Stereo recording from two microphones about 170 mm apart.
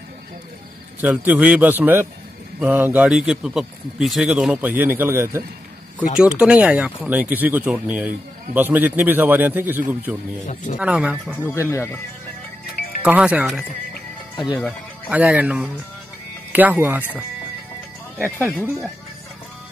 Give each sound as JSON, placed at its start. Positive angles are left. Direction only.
{"t": 1.0, "sound": "a man's voice", "side_deg": -10}
{"t": 10.4, "sound": "a man's voice", "side_deg": 50}
{"t": 10.8, "sound": "a man's voice", "side_deg": -5}
{"t": 11.5, "sound": "speech", "side_deg": 15}
{"t": 13.0, "sound": "a man's voice", "side_deg": -10}